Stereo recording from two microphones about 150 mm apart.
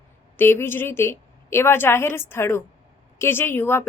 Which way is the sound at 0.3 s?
15° left (ahead or behind).